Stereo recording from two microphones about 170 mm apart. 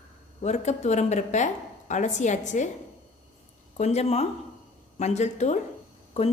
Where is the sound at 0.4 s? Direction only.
40° left (ahead or behind).